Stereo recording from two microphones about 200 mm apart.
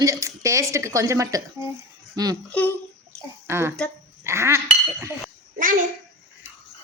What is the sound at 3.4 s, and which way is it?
Speech, 10° right (ahead or behind).